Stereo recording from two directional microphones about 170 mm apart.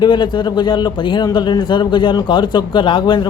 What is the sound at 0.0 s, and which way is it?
Speech, 25° left (ahead or behind).